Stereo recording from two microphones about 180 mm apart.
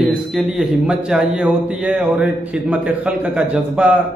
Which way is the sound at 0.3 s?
Centre (ahead or behind).